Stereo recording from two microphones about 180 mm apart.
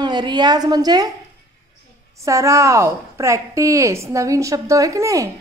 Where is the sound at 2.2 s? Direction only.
15° right (ahead or behind).